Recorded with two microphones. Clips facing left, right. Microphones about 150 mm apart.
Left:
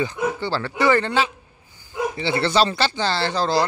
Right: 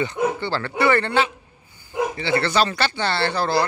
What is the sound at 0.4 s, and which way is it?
A man's voice, 10° left (ahead or behind).